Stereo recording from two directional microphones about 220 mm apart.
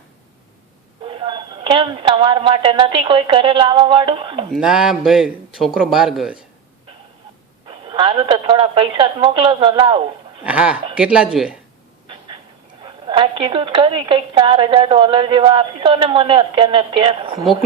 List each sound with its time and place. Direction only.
1.0 s a woman's voice: 25° right (ahead or behind)
4.5 s speech: centre (ahead or behind)
7.7 s a woman's voice: 20° right (ahead or behind)
10.4 s speech: 5° right (ahead or behind)
12.8 s a woman's voice: 20° right (ahead or behind)